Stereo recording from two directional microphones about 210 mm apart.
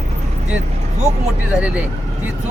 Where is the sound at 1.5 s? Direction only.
5° right (ahead or behind).